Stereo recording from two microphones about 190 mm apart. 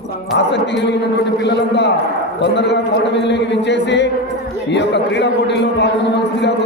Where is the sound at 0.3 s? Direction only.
65° left (ahead or behind).